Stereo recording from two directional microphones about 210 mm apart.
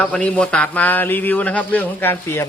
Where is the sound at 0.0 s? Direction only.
5° left (ahead or behind).